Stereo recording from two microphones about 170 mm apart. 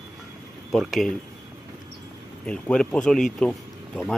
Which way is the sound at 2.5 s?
5° left (ahead or behind).